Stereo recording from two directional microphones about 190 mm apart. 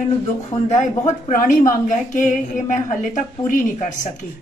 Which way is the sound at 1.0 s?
45° left (ahead or behind).